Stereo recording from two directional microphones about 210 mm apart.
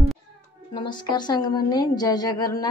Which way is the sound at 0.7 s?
20° left (ahead or behind).